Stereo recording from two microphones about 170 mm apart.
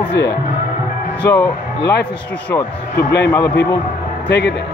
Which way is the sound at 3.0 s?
85° left.